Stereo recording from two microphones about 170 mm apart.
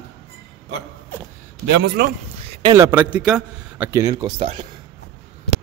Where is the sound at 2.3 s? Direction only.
35° right (ahead or behind).